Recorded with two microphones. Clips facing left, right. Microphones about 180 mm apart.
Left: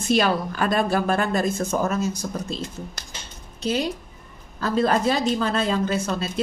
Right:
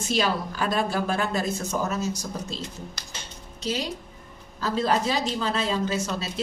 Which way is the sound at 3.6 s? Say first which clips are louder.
Left 5 dB; 55° left (ahead or behind).